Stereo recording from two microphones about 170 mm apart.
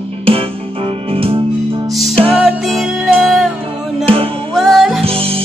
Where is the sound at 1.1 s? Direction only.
35° right (ahead or behind).